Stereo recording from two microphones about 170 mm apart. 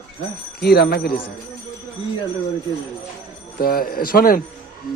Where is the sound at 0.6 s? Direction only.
70° left (ahead or behind).